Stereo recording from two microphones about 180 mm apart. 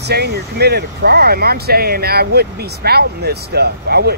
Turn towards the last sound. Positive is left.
turn(degrees=-65)  # may be behind; listen again after turning